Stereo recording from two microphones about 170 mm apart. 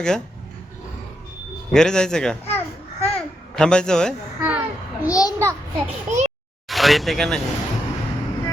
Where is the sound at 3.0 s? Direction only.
35° left (ahead or behind).